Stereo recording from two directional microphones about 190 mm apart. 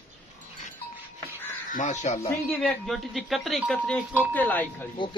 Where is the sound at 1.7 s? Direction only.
40° left (ahead or behind).